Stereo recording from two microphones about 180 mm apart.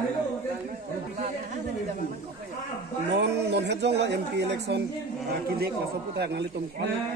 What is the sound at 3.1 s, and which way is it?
A woman's voice, 70° right (ahead or behind).